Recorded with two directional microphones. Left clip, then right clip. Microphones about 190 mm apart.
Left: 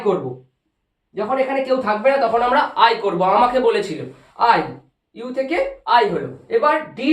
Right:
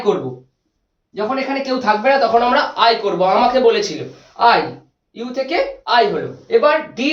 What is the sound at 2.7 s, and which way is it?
Speech, 20° left (ahead or behind).